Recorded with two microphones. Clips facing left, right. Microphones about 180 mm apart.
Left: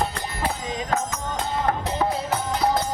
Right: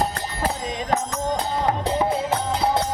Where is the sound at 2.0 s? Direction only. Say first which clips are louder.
Right 2 dB; 25° right (ahead or behind).